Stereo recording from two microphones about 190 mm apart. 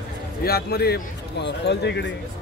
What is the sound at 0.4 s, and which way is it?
A man's voice, 55° left (ahead or behind).